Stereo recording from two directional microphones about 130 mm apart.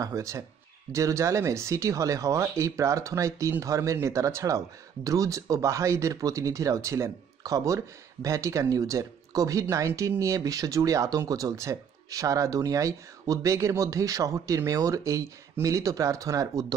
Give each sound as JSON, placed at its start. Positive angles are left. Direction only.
{"t": 0.0, "sound": "speech", "side_deg": -25}